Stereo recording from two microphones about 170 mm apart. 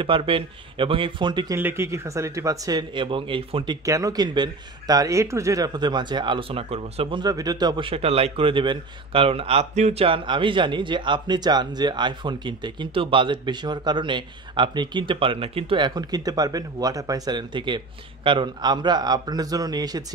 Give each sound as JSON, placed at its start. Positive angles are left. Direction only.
{"t": 0.0, "sound": "speech", "side_deg": -30}
{"t": 1.6, "sound": "speech", "side_deg": -15}
{"t": 3.8, "sound": "speech", "side_deg": -20}